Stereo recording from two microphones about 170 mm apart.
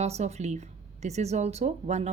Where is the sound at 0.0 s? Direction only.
40° right (ahead or behind).